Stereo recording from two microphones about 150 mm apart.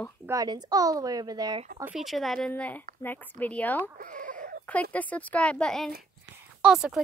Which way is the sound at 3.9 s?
60° right (ahead or behind).